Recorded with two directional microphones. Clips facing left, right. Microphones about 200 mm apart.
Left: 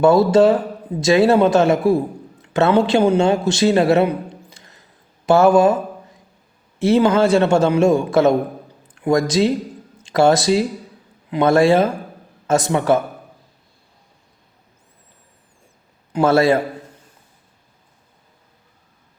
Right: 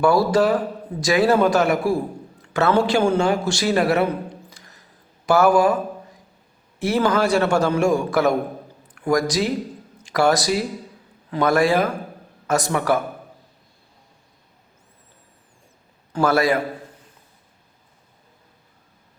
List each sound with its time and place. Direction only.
0.0 s a man's voice: 25° left (ahead or behind)
6.7 s a man's voice: 25° left (ahead or behind)
16.1 s a man's voice: 25° left (ahead or behind)